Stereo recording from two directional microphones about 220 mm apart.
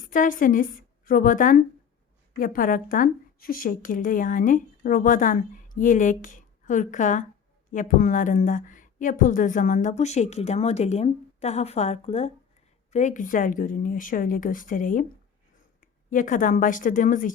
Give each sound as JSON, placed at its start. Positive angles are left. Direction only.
{"t": 0.0, "sound": "a woman's voice", "side_deg": 40}